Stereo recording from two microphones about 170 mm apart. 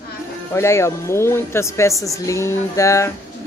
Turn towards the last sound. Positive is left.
turn(degrees=15)  # may be behind; listen again after turning